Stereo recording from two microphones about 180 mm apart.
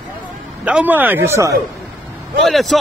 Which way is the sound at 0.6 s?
10° right (ahead or behind).